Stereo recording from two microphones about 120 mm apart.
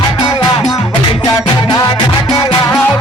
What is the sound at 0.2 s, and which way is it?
Music, 40° left (ahead or behind).